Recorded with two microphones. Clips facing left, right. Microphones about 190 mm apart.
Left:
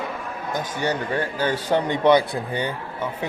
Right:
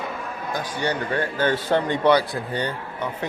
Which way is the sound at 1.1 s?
15° left (ahead or behind).